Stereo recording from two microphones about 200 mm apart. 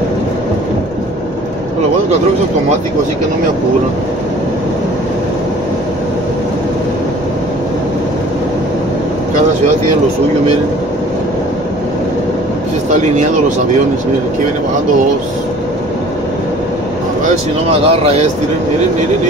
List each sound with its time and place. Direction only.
17.6 s speech: 30° right (ahead or behind)